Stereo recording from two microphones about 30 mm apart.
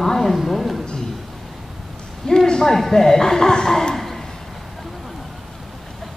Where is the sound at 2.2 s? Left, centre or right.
Left.